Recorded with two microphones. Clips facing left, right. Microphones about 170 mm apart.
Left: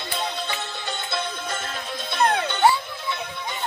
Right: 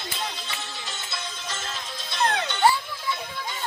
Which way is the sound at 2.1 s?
55° left (ahead or behind).